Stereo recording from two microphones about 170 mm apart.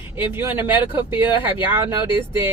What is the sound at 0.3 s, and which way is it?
Speech, 10° right (ahead or behind).